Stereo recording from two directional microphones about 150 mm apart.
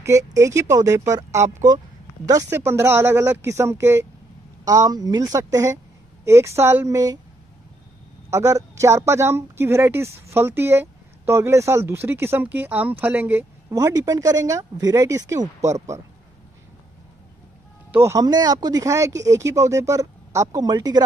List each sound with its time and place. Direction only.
0.0 s speech: 20° right (ahead or behind)
8.3 s speech: 20° right (ahead or behind)
18.0 s speech: 25° right (ahead or behind)